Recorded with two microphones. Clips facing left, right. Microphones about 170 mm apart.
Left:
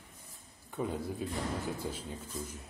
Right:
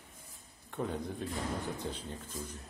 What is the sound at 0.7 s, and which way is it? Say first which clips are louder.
A man's voice: left 1 dB; 5° left (ahead or behind).